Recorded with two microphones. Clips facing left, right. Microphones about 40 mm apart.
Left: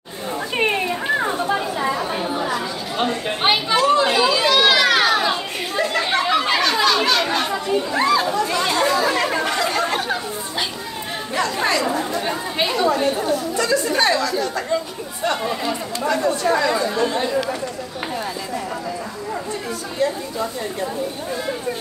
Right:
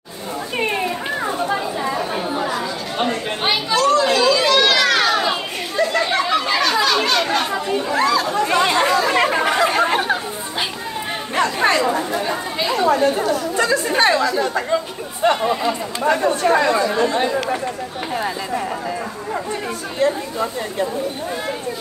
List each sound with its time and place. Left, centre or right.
1.8 s chatter: centre
2.1 s chatter: centre
3.4 s children playing: left
5.8 s chatter: centre
8.0 s chatter: centre
8.4 s chatter: right
11.8 s chatter: right
12.7 s speech: right
15.2 s chatter: right
16.0 s speech: right
20.0 s speech: right